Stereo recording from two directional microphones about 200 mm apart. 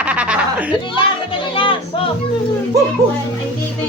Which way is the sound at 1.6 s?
25° left (ahead or behind).